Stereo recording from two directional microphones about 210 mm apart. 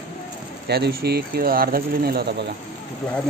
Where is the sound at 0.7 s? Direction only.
50° right (ahead or behind).